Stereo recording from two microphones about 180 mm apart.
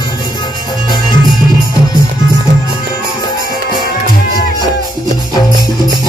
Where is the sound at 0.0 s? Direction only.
25° left (ahead or behind).